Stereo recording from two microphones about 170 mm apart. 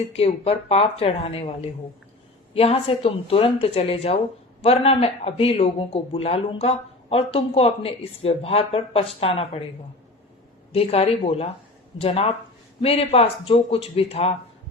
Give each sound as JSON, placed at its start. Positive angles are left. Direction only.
{"t": 0.1, "sound": "a man's voice", "side_deg": 35}
{"t": 2.5, "sound": "a man's voice", "side_deg": 35}
{"t": 10.7, "sound": "a man's voice", "side_deg": 35}